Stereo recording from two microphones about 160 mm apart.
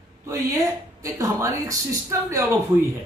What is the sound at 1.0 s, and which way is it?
Speech, 20° right (ahead or behind).